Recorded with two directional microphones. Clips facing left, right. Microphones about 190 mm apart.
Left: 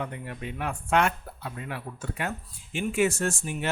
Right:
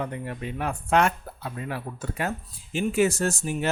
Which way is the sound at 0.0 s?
40° right (ahead or behind).